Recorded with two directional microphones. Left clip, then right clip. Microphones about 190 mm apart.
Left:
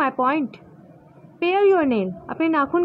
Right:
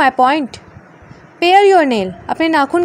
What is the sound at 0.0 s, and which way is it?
A woman's voice, 20° right (ahead or behind).